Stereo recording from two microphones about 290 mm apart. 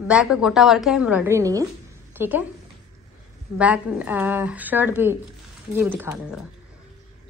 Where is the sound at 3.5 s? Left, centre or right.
Centre.